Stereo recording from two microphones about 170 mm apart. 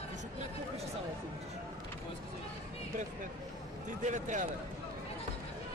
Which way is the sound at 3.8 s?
45° right (ahead or behind).